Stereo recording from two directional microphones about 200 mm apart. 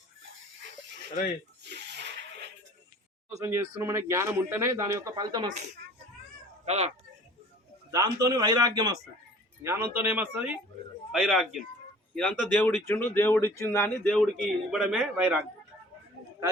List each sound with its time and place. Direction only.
1.6 s sneeze: 60° right (ahead or behind)
3.4 s a man's voice: 15° right (ahead or behind)
6.7 s speech: 30° right (ahead or behind)
7.9 s a man's voice: 15° right (ahead or behind); by 14.3 s 5° left (ahead or behind)
14.7 s a man's voice: 5° right (ahead or behind)